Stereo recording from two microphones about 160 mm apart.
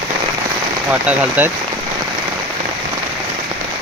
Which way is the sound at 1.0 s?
10° right (ahead or behind).